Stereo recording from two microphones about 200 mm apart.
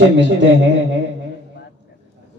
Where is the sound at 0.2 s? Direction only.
65° right (ahead or behind).